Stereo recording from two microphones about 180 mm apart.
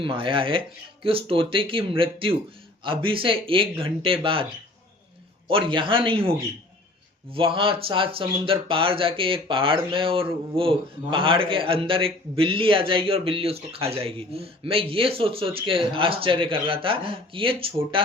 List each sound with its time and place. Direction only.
0.0 s speech: 30° right (ahead or behind)
5.5 s speech: 30° right (ahead or behind)